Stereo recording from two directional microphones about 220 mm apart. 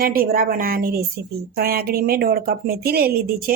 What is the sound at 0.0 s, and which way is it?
A woman's voice, 40° right (ahead or behind).